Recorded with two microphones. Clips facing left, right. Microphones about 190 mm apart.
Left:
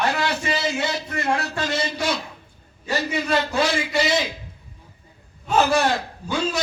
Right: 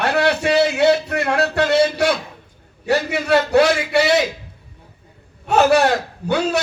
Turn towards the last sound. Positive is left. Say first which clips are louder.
# right 6 dB
turn(degrees=-65)  # may be behind; listen again after turning